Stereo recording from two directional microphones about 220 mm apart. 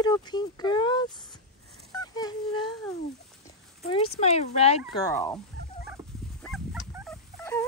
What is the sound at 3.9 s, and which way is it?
Speech, 25° left (ahead or behind).